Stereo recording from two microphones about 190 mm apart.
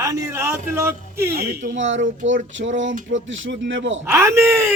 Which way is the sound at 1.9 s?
80° right.